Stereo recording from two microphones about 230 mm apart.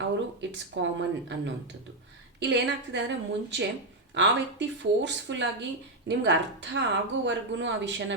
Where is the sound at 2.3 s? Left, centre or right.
Right.